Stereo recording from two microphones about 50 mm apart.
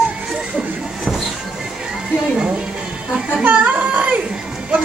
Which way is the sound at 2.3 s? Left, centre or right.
Centre.